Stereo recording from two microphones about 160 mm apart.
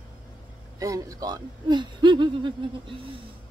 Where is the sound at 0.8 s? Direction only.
20° right (ahead or behind).